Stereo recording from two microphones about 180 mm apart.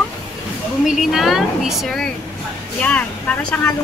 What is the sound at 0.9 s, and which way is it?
A woman's voice, centre (ahead or behind).